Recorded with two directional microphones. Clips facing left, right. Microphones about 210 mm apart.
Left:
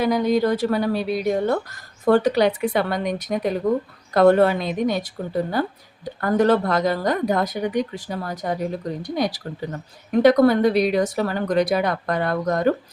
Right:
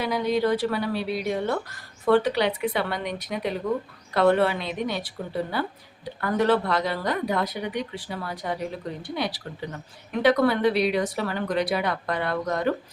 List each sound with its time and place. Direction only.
0.0 s speech: 45° left (ahead or behind)